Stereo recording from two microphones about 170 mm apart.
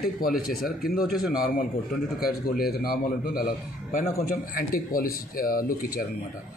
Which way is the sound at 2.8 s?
60° left (ahead or behind).